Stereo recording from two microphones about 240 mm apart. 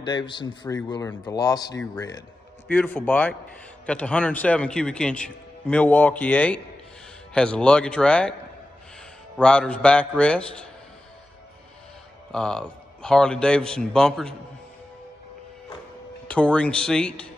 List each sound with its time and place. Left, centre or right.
0.0 s a man's voice: centre
9.4 s speech: centre
12.3 s speech: centre
16.3 s speech: centre